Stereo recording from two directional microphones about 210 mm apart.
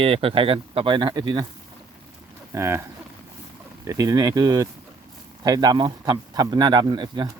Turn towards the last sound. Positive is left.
turn(degrees=-20)  # may be behind; listen again after turning